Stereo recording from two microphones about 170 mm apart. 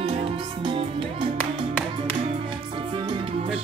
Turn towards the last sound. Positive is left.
turn(degrees=-30)  # may be behind; listen again after turning